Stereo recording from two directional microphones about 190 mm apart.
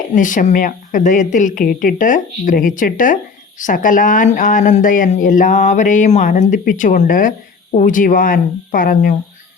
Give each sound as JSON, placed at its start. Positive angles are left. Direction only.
{"t": 0.1, "sound": "speech", "side_deg": 45}